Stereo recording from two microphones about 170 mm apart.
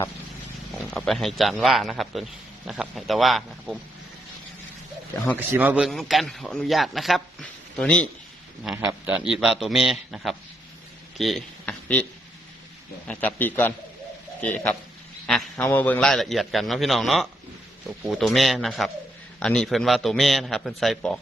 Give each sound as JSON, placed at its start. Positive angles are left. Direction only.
{"t": 0.9, "sound": "a man's voice", "side_deg": 5}
{"t": 5.4, "sound": "a man's voice", "side_deg": -10}
{"t": 8.7, "sound": "a man's voice", "side_deg": -15}
{"t": 11.2, "sound": "a sound", "side_deg": 0}
{"t": 13.1, "sound": "a man's voice", "side_deg": 10}